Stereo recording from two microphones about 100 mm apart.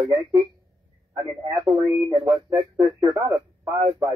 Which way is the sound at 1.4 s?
35° right (ahead or behind).